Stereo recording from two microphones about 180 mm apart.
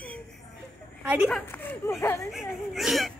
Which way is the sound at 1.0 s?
10° right (ahead or behind).